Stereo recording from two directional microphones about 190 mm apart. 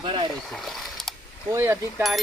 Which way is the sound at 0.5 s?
Centre (ahead or behind).